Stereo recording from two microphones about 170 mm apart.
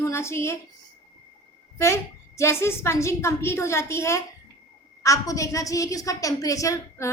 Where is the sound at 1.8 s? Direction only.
15° left (ahead or behind).